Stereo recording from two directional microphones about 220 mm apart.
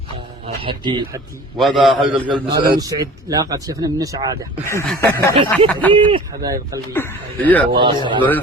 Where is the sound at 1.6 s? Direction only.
Centre (ahead or behind).